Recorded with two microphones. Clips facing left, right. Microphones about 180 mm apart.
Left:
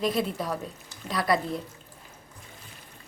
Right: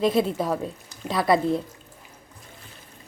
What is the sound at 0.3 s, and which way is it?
Speech, 25° right (ahead or behind).